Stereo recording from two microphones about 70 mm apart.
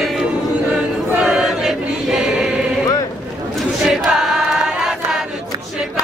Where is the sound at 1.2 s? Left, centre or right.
Centre.